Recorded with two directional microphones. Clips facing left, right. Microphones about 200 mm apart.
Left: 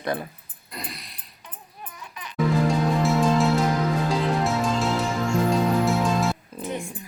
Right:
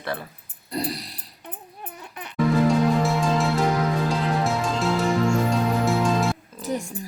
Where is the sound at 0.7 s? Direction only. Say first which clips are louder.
Right 10 dB; 35° right (ahead or behind).